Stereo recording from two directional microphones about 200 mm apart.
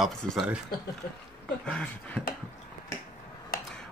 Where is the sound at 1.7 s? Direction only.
5° left (ahead or behind).